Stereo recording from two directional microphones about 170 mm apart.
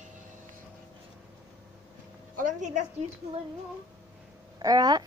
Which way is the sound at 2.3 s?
45° right (ahead or behind).